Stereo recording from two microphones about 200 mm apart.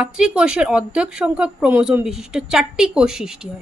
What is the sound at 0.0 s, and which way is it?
A woman's voice, 5° right (ahead or behind).